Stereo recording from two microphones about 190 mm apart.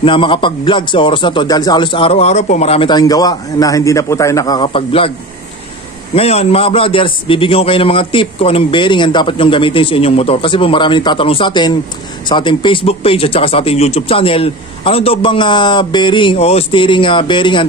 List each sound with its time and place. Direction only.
0.0 s a man's voice: 25° left (ahead or behind)
6.1 s a man's voice: 35° left (ahead or behind)